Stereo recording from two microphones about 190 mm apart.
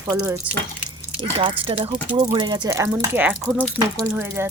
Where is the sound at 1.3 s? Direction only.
30° right (ahead or behind).